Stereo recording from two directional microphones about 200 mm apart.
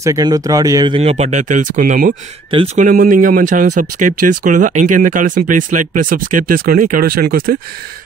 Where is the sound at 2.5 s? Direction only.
35° right (ahead or behind).